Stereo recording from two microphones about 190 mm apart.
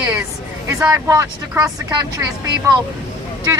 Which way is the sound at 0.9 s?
15° right (ahead or behind).